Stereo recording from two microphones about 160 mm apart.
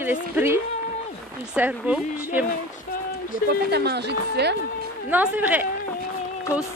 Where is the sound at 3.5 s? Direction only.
90° right.